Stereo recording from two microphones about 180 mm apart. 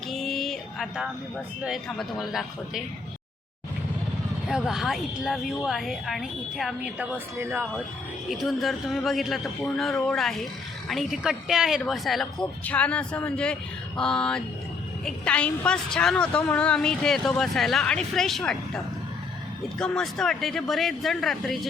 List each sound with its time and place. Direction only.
0.1 s a sound: centre (ahead or behind)
1.6 s a woman's voice: centre (ahead or behind)
4.4 s a woman's voice: 5° right (ahead or behind)
7.3 s speech: 15° right (ahead or behind)
8.3 s a woman's voice: centre (ahead or behind)